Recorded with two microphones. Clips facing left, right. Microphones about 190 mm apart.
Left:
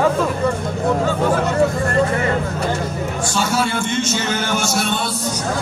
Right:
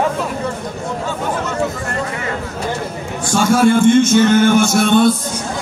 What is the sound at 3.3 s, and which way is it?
Speech, 50° right (ahead or behind).